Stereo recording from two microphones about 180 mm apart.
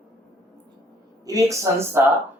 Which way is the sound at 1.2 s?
20° right (ahead or behind).